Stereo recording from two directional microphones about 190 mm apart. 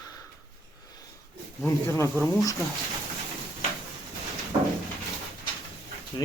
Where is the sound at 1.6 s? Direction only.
15° left (ahead or behind).